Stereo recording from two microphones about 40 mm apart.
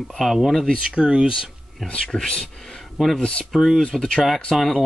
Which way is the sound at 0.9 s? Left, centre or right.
Right.